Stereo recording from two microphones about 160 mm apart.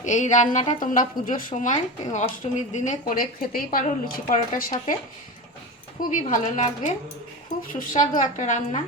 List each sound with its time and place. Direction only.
0.0 s a woman's voice: 50° left (ahead or behind)
3.1 s speech: 60° left (ahead or behind)
6.0 s speech: 55° left (ahead or behind)